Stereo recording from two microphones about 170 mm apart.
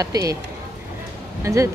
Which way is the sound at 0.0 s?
20° right (ahead or behind).